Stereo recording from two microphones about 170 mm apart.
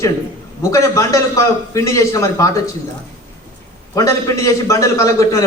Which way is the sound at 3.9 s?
20° left (ahead or behind).